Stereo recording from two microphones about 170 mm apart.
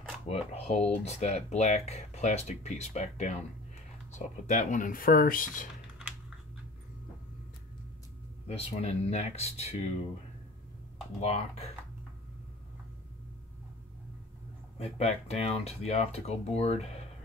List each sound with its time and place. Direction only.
0.3 s speech: 35° left (ahead or behind); by 5.7 s 55° left (ahead or behind)
8.5 s speech: 40° left (ahead or behind)
11.1 s speech: 40° left (ahead or behind)
14.8 s speech: 40° left (ahead or behind)